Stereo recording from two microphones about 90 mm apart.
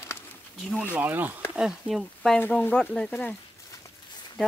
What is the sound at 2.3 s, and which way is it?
Speech, 20° left (ahead or behind).